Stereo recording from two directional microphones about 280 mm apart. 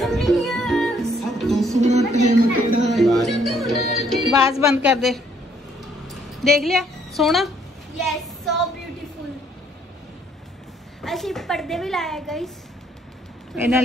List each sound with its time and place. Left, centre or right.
0.0 s music: centre
1.8 s chatter: right
2.9 s music: centre
4.6 s speech: centre
4.9 s a woman's voice: centre
6.0 s a sound: centre
8.0 s child singing: centre
11.0 s a woman's voice: centre